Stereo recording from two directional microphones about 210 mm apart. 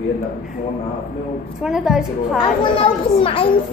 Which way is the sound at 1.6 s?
Centre (ahead or behind).